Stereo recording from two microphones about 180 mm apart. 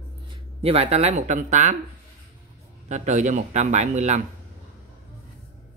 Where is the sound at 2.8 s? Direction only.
40° right (ahead or behind).